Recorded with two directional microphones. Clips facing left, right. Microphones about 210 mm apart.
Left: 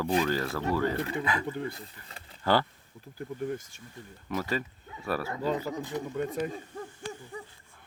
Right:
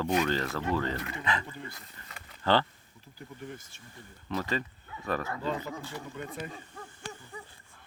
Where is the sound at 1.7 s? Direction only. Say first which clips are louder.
Left 4 dB; 30° left (ahead or behind).